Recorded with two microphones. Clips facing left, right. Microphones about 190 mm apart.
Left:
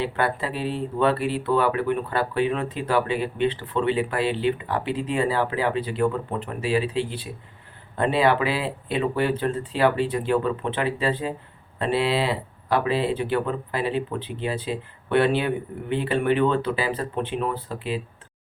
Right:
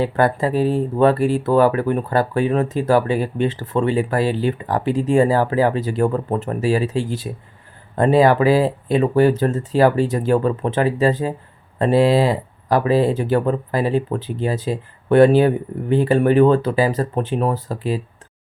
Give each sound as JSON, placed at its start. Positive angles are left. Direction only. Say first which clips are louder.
{"t": 0.0, "sound": "speech", "louder": "right 7 dB", "side_deg": -40}